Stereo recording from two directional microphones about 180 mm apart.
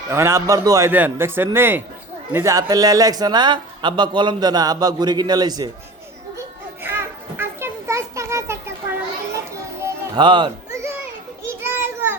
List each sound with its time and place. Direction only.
0.1 s a man's voice: 15° right (ahead or behind)
6.8 s children playing: 10° right (ahead or behind)
9.8 s music: 25° right (ahead or behind)
11.6 s children playing: 10° right (ahead or behind)